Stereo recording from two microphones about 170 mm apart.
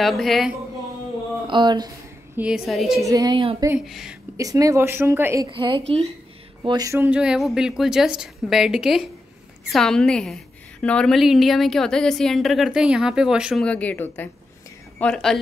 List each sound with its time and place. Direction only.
0.0 s a woman's voice: centre (ahead or behind)
1.5 s a woman's voice: 25° right (ahead or behind)
2.3 s a woman's voice: 5° right (ahead or behind)
3.0 s a woman's voice: 20° right (ahead or behind)
3.8 s a woman's voice: centre (ahead or behind)
4.4 s a woman's voice: 20° right (ahead or behind)
5.5 s a woman's voice: 30° right (ahead or behind)
6.6 s a woman's voice: 25° right (ahead or behind)
7.0 s a woman's voice: 5° right (ahead or behind)